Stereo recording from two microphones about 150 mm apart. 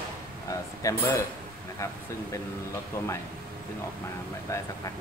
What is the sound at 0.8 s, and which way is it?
Speech, 20° left (ahead or behind).